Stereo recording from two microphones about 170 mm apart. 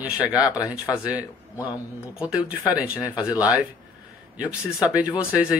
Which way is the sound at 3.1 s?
20° left (ahead or behind).